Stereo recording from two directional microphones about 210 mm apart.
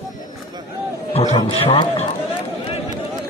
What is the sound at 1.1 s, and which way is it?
Speech, 30° left (ahead or behind).